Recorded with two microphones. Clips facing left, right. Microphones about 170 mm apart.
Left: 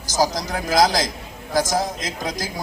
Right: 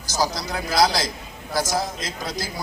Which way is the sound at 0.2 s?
45° left (ahead or behind).